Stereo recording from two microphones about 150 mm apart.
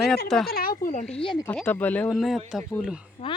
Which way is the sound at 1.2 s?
30° left (ahead or behind).